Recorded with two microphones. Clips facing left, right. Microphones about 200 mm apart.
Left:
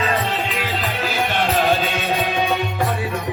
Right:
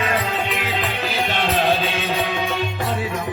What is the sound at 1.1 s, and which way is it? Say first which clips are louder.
Music: left 2 dB; 50° left (ahead or behind).